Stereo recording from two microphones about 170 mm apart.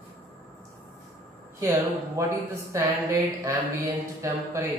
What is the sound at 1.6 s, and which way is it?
Mantra, 15° right (ahead or behind).